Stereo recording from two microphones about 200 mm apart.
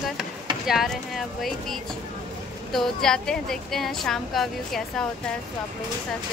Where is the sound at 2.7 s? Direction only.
Centre (ahead or behind).